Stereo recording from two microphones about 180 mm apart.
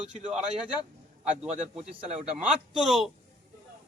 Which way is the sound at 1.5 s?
40° right (ahead or behind).